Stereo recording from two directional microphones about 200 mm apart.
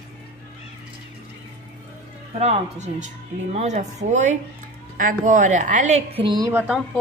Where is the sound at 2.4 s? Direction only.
35° right (ahead or behind).